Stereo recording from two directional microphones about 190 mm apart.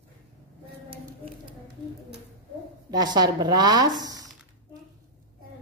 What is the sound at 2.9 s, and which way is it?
Speech, 20° right (ahead or behind).